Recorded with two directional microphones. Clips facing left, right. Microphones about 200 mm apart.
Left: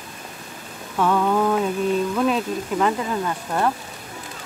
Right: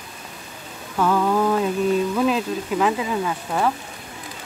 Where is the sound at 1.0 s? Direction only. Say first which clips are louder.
Even; centre (ahead or behind).